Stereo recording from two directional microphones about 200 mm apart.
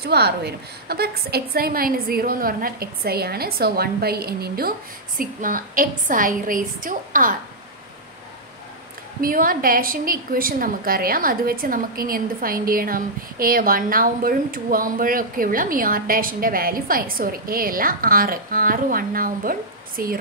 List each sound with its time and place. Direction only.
0.0 s a woman's voice: 55° right (ahead or behind)
9.2 s a woman's voice: 45° right (ahead or behind)